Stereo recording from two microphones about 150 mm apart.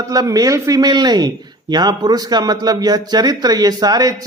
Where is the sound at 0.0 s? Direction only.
25° right (ahead or behind).